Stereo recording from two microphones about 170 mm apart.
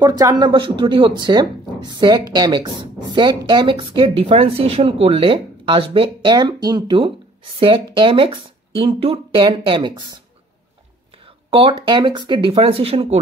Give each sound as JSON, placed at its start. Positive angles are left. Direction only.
{"t": 0.0, "sound": "speech", "side_deg": -20}
{"t": 11.2, "sound": "a sound", "side_deg": -30}
{"t": 11.8, "sound": "speech", "side_deg": -25}